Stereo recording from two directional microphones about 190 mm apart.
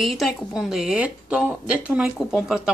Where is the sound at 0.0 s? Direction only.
Centre (ahead or behind).